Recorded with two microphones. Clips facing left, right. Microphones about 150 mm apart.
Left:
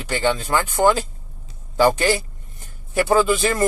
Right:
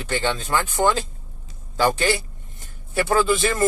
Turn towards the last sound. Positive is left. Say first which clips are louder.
# left 2 dB
turn(degrees=15)  # may be behind; listen again after turning